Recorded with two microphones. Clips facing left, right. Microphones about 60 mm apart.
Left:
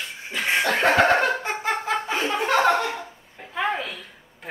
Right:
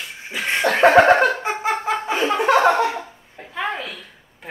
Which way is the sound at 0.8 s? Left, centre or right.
Right.